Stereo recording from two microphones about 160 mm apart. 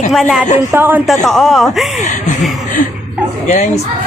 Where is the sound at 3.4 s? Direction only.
50° left (ahead or behind).